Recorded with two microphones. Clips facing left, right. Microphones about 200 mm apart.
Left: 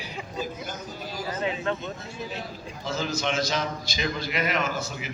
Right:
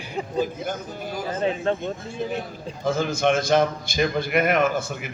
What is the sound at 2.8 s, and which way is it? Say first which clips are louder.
A man's voice: right 7 dB; 50° right (ahead or behind).